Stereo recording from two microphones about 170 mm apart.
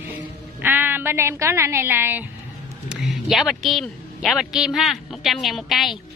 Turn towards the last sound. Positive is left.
turn(degrees=0)  # may be behind; listen again after turning